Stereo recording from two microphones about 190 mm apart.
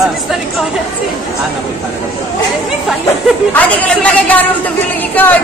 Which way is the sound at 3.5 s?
5° left (ahead or behind).